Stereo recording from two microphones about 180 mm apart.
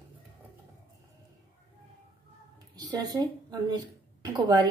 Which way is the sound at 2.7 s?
20° right (ahead or behind).